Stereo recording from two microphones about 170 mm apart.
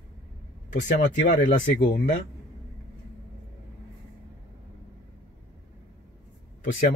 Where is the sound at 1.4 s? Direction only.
50° left (ahead or behind).